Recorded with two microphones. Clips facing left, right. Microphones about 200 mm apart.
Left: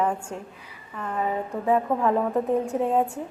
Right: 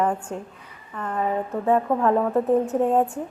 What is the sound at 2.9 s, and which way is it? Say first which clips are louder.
Speech: right 2 dB; 5° left (ahead or behind).